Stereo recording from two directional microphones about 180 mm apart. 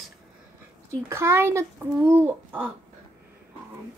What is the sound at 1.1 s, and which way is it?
A child's voice, 15° right (ahead or behind).